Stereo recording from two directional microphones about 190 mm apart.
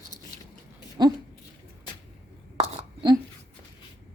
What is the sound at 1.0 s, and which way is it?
Speech, 20° right (ahead or behind).